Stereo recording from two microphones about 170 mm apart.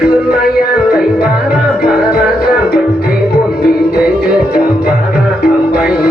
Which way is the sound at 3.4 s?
65° left (ahead or behind).